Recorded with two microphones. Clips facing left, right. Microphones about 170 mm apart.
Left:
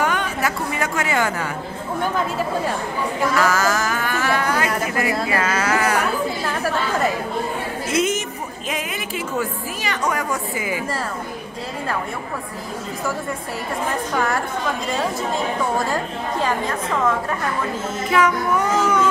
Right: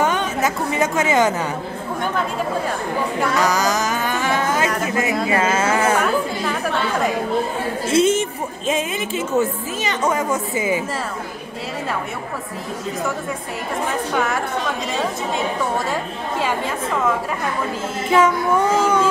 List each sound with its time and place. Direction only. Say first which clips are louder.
0.0 s a woman's voice: right 2 dB; 20° right (ahead or behind)
3.3 s music: even; 20° right (ahead or behind)
5.3 s a woman's voice: right 2 dB; 25° right (ahead or behind)
7.9 s a woman's voice: right 5 dB; 30° right (ahead or behind)
14.1 s a woman's voice: even; centre (ahead or behind)
18.1 s a woman's voice: right 3 dB; 25° right (ahead or behind)